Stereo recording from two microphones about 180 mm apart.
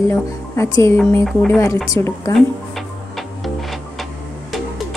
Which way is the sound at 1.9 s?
15° left (ahead or behind).